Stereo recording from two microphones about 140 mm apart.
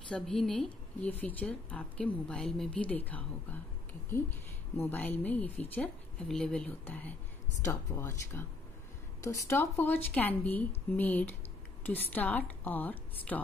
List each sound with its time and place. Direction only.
0.1 s a woman's voice: 5° left (ahead or behind)